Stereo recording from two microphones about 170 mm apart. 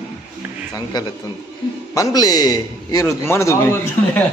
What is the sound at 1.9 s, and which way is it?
A man's voice, 20° left (ahead or behind).